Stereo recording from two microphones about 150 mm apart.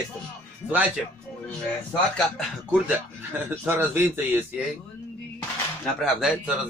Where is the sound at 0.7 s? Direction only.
10° right (ahead or behind).